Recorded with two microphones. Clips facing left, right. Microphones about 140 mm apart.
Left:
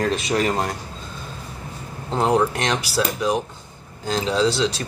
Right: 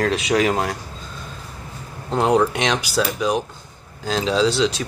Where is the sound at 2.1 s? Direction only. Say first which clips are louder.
Right 2 dB; centre (ahead or behind).